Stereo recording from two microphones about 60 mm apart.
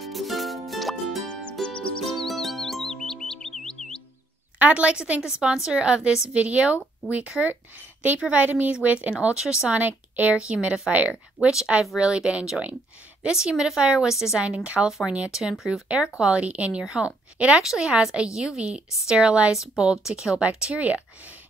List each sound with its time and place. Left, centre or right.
0.0 s music: centre
1.3 s music: centre
4.6 s a woman's voice: right
9.1 s a woman's voice: centre
9.7 s a woman's voice: right
11.4 s speech: centre
12.0 s a woman's voice: centre
14.4 s a woman's voice: right
16.2 s a woman's voice: centre
19.5 s a woman's voice: centre